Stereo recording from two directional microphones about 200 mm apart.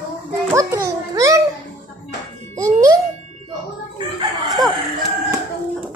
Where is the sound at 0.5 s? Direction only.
15° right (ahead or behind).